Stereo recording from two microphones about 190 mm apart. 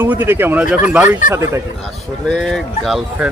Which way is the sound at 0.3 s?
10° right (ahead or behind).